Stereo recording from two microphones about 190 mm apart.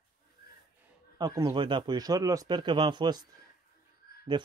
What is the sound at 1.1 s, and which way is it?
Speech, 20° right (ahead or behind).